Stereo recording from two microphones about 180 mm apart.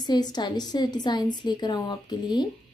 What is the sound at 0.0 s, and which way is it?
A woman's voice, 25° left (ahead or behind).